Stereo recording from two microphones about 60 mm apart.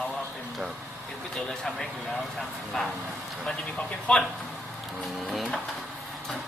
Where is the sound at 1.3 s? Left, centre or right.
Centre.